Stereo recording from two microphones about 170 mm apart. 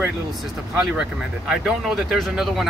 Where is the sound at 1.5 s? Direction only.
Centre (ahead or behind).